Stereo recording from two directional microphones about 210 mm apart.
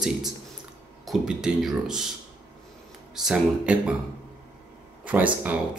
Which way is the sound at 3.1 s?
Centre (ahead or behind).